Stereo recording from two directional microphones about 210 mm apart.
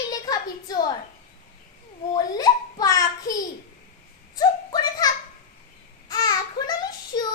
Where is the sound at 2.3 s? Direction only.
15° left (ahead or behind).